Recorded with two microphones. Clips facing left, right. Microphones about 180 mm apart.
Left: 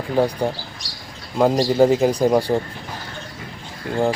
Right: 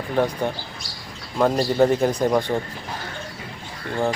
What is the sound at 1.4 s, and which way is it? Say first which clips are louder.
Speech: left 3 dB; 15° left (ahead or behind).